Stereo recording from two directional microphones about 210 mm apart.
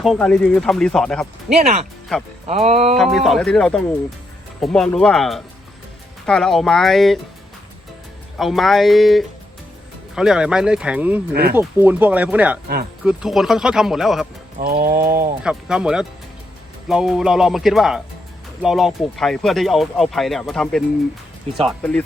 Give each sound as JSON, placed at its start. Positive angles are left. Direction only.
{"t": 0.0, "sound": "speech", "side_deg": 0}
{"t": 1.5, "sound": "music", "side_deg": -30}
{"t": 2.9, "sound": "speech", "side_deg": 0}
{"t": 8.4, "sound": "speech", "side_deg": 0}
{"t": 14.6, "sound": "pigeon", "side_deg": -45}
{"t": 15.4, "sound": "speech", "side_deg": -5}